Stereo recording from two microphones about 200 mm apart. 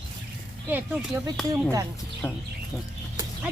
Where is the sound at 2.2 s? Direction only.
15° left (ahead or behind).